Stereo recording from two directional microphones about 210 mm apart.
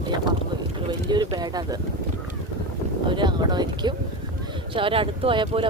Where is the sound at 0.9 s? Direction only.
20° right (ahead or behind).